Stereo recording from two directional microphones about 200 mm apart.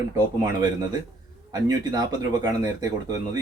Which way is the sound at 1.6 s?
20° right (ahead or behind).